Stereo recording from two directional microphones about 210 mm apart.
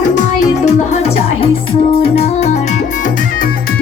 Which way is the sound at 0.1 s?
35° left (ahead or behind).